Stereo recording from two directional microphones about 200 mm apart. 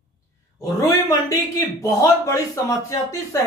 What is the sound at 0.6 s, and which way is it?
Speech, 15° left (ahead or behind).